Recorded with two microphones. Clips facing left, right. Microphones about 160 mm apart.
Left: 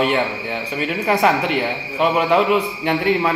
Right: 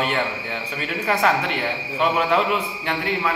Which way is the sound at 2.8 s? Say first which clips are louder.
Left 6 dB; 20° left (ahead or behind).